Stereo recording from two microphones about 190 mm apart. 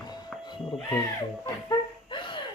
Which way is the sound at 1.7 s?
25° left (ahead or behind).